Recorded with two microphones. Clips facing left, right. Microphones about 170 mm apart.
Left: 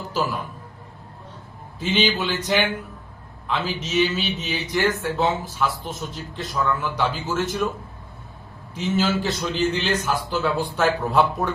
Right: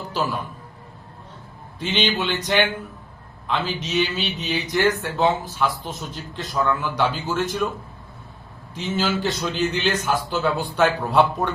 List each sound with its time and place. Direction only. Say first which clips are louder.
1.8 s a man's voice: left 1 dB; 5° left (ahead or behind)
8.7 s a man's voice: left 2 dB; centre (ahead or behind)